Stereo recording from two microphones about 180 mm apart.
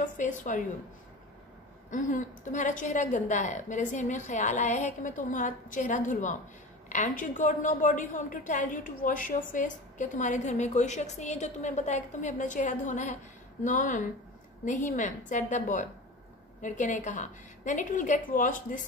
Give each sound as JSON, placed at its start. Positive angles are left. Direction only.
{"t": 0.0, "sound": "a woman's voice", "side_deg": 45}
{"t": 1.9, "sound": "a woman's voice", "side_deg": 45}